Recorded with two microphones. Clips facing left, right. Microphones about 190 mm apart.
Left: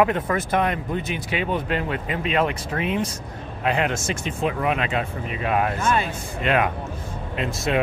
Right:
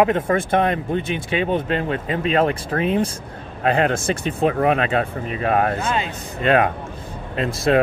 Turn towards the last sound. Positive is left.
turn(degrees=-35)  # may be behind; listen again after turning